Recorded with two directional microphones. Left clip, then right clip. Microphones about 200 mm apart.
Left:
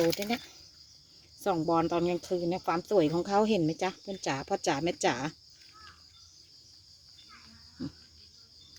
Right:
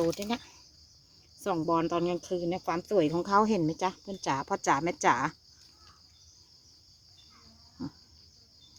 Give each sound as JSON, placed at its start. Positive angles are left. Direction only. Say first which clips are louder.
{"t": 0.2, "sound": "speech", "louder": "left 1 dB", "side_deg": 5}